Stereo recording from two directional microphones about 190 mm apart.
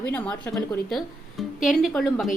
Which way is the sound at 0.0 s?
10° left (ahead or behind).